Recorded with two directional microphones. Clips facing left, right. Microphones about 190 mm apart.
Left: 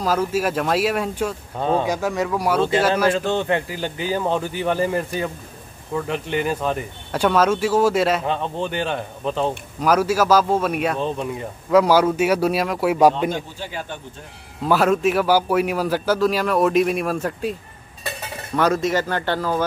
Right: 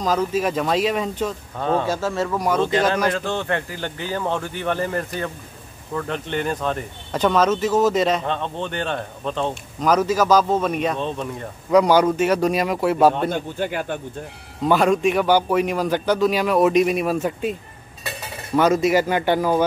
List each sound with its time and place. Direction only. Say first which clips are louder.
0.0 s speech: even; 10° left (ahead or behind)
13.3 s a man's voice: right 4 dB; 55° right (ahead or behind)
14.6 s a man's voice: even; centre (ahead or behind); by 19.6 s 15° right (ahead or behind)